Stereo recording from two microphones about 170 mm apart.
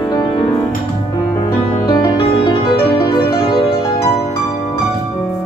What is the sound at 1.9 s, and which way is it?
Music, 25° left (ahead or behind).